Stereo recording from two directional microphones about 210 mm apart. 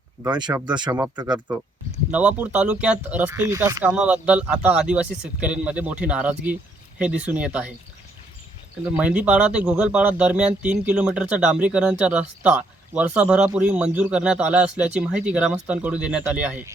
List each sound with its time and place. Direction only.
0.2 s speech: 20° right (ahead or behind)
0.9 s speech: 10° right (ahead or behind)
8.8 s speech: 5° right (ahead or behind)